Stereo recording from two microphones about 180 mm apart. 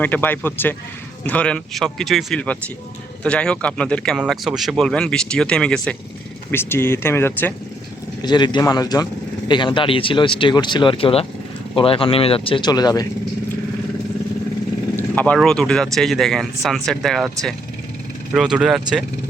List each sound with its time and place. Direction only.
0.0 s speech: 10° left (ahead or behind)
8.2 s speech: 25° left (ahead or behind)
14.9 s vehicle: 10° left (ahead or behind)
15.4 s speech: 5° left (ahead or behind)
18.3 s speech: 5° right (ahead or behind)